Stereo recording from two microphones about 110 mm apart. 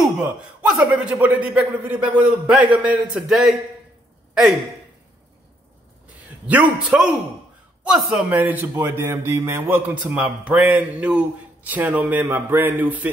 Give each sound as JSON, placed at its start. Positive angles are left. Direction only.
{"t": 0.7, "sound": "a man's voice", "side_deg": -10}
{"t": 6.4, "sound": "a man's voice", "side_deg": -10}
{"t": 9.8, "sound": "a man's voice", "side_deg": -10}